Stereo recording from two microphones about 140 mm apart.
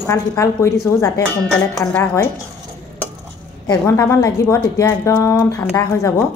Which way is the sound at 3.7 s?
20° left (ahead or behind).